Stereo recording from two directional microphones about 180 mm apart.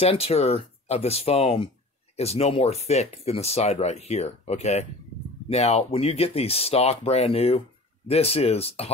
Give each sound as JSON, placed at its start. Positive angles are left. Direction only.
{"t": 0.0, "sound": "speech", "side_deg": 35}